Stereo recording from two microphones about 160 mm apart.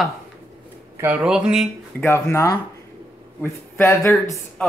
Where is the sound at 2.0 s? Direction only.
15° left (ahead or behind).